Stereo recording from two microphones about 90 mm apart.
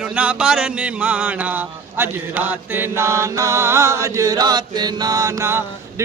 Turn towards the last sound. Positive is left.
turn(degrees=-30)  # may be behind; listen again after turning